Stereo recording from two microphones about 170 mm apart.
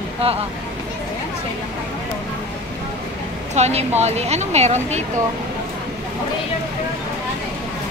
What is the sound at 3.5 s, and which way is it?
A woman's voice, 40° right (ahead or behind).